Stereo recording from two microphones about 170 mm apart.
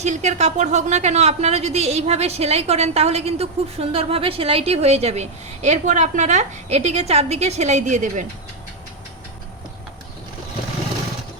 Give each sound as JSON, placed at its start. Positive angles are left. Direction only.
{"t": 0.0, "sound": "a woman's voice", "side_deg": -40}